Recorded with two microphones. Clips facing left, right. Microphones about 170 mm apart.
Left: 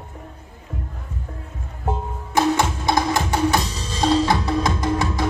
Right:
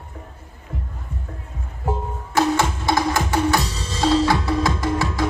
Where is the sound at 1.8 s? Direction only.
15° left (ahead or behind).